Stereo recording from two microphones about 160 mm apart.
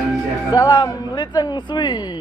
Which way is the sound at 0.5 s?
25° left (ahead or behind).